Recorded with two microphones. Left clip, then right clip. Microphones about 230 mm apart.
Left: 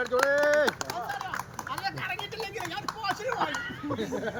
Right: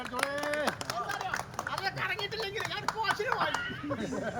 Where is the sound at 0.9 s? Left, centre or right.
Centre.